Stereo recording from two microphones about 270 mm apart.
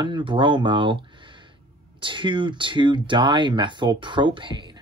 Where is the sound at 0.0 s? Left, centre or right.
Centre.